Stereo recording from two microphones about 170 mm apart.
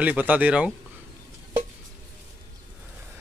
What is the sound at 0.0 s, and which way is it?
Speech, 10° right (ahead or behind).